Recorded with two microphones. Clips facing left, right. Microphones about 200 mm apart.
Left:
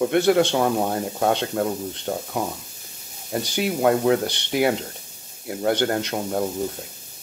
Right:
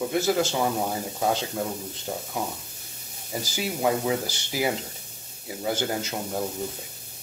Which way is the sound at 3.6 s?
60° left (ahead or behind).